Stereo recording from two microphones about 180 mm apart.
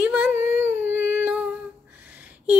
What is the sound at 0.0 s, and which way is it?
Humming, 10° right (ahead or behind).